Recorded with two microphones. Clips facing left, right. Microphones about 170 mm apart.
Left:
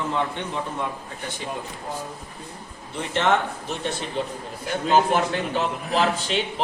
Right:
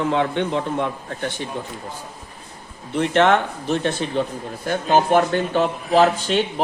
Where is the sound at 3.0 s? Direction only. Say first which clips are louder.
Right 6 dB; 65° right (ahead or behind).